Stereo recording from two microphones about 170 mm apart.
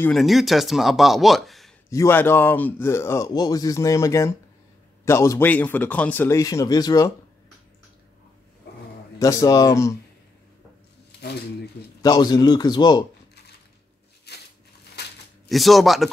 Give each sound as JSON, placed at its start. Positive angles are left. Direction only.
{"t": 0.0, "sound": "speech", "side_deg": 0}
{"t": 1.9, "sound": "speech", "side_deg": 15}
{"t": 9.2, "sound": "speech", "side_deg": 20}
{"t": 11.1, "sound": "a sound", "side_deg": 75}
{"t": 12.0, "sound": "speech", "side_deg": 25}
{"t": 14.3, "sound": "crushing", "side_deg": 75}
{"t": 15.0, "sound": "a sound", "side_deg": 80}
{"t": 15.4, "sound": "speech", "side_deg": 0}